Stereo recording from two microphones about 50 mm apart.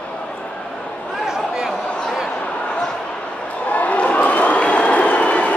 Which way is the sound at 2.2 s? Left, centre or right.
Left.